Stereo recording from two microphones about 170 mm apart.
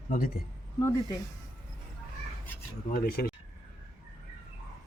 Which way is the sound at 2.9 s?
60° left (ahead or behind).